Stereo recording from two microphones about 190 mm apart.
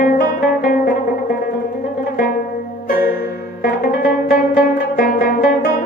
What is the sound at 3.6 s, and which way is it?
Music, 55° left (ahead or behind).